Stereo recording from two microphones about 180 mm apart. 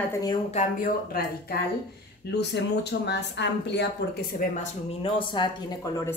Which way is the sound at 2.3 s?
70° left (ahead or behind).